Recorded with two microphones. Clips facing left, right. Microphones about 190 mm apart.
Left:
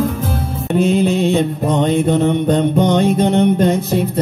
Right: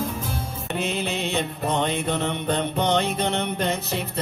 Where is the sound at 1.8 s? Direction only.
50° left (ahead or behind).